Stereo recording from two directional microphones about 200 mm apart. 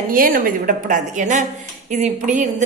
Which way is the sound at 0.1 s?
45° right (ahead or behind).